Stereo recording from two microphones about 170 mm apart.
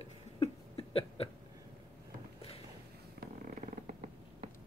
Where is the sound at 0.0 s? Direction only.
35° left (ahead or behind).